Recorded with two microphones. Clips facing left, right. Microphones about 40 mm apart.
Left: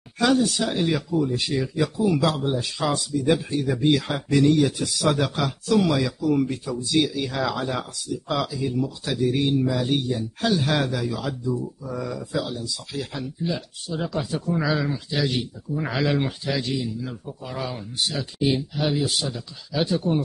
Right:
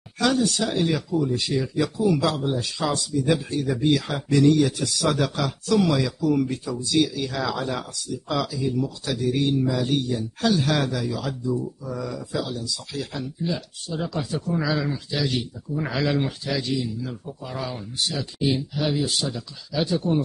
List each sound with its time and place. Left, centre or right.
0.4 s speech: centre